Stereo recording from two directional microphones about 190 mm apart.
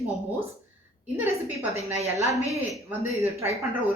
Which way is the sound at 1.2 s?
10° right (ahead or behind).